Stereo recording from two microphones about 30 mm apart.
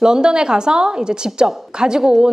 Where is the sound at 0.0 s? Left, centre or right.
Right.